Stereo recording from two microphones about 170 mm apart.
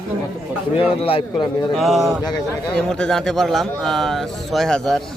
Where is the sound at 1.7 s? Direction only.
Centre (ahead or behind).